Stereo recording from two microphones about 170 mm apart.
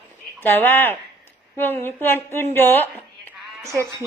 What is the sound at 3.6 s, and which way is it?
Speech, 15° right (ahead or behind).